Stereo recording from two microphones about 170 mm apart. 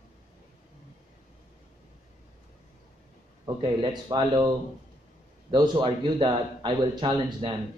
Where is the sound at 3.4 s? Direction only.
25° right (ahead or behind).